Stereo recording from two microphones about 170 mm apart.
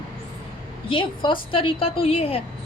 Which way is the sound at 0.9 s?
30° left (ahead or behind).